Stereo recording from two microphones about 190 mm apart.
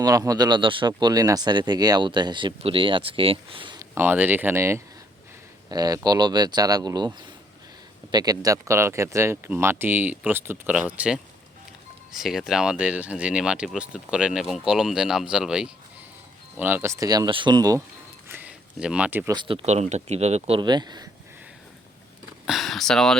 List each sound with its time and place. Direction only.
0.0 s speech: 20° right (ahead or behind)
3.9 s speech: 10° right (ahead or behind)
18.3 s a sound: 10° right (ahead or behind)
19.3 s speech: 25° right (ahead or behind)
20.6 s speech: 20° right (ahead or behind)
22.4 s speech: centre (ahead or behind)